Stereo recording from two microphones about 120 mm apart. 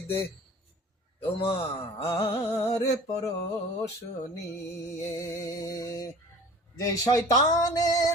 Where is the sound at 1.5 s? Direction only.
55° left (ahead or behind).